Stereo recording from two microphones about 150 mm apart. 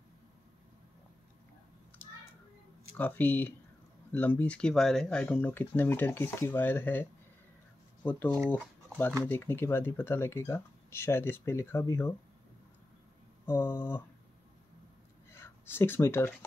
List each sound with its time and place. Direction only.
3.0 s speech: 10° left (ahead or behind)
13.7 s speech: 15° left (ahead or behind)
15.3 s speech: 15° left (ahead or behind)